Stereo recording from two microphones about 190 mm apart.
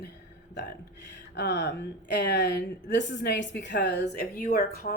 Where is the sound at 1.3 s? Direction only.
60° left (ahead or behind).